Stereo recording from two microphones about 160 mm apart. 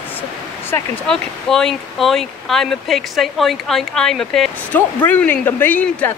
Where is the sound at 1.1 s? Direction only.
5° left (ahead or behind).